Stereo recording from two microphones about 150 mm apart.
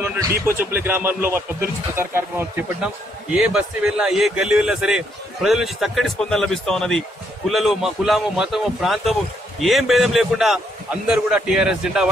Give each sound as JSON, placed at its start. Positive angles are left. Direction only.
{"t": 0.0, "sound": "a man's voice", "side_deg": -15}